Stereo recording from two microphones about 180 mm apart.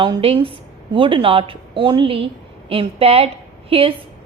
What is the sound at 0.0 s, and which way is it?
A woman's voice, 30° right (ahead or behind).